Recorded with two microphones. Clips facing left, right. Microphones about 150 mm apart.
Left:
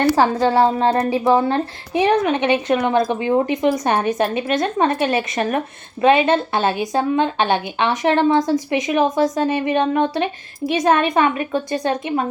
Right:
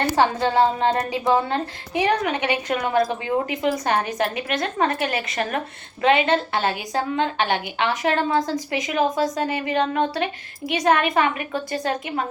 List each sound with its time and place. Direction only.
0.2 s a woman's voice: 35° left (ahead or behind)